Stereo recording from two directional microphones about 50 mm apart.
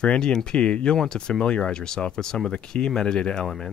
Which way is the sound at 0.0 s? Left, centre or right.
Centre.